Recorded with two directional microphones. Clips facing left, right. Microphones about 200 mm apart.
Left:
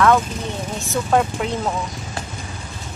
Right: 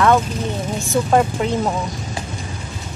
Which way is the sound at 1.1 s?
Centre (ahead or behind).